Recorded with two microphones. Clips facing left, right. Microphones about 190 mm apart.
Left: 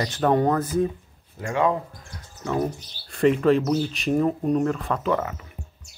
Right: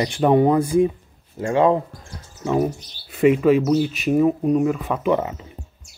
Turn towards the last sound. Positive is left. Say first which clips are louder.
# right 4 dB
turn(degrees=-20)  # may be behind; listen again after turning